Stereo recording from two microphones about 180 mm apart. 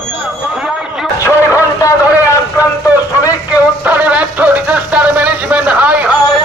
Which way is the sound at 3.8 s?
10° right (ahead or behind).